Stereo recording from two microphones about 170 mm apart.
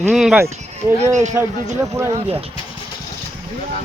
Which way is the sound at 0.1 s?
Centre (ahead or behind).